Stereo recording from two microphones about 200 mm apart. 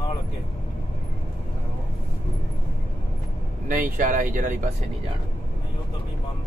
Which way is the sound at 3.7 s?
40° right (ahead or behind).